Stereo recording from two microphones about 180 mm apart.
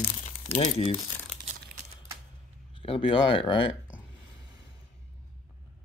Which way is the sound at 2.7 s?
30° left (ahead or behind).